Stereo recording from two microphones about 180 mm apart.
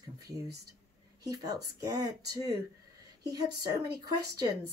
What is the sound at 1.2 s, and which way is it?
Speech, 20° right (ahead or behind).